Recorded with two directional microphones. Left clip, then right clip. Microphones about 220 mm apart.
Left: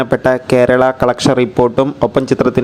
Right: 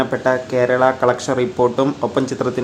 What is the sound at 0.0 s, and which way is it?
Speech, 35° left (ahead or behind).